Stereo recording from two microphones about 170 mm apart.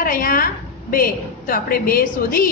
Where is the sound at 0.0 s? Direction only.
55° left (ahead or behind).